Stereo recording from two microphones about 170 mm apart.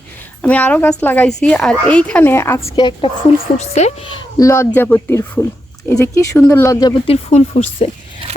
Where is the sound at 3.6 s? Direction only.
40° left (ahead or behind); by 6.9 s 15° left (ahead or behind).